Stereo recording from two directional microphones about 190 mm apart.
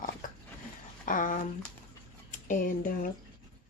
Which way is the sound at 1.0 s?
45° left (ahead or behind).